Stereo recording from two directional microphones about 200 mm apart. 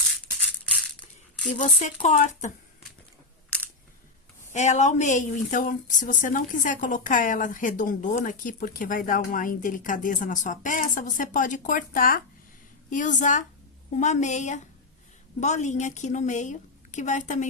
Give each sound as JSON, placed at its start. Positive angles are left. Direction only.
{"t": 0.7, "sound": "a sound", "side_deg": 5}
{"t": 1.5, "sound": "a woman's voice", "side_deg": 40}
{"t": 4.5, "sound": "a woman's voice", "side_deg": 35}